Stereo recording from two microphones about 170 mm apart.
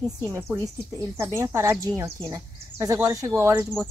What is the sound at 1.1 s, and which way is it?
Speech, 15° right (ahead or behind).